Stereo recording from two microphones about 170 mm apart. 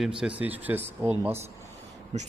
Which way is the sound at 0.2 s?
10° right (ahead or behind).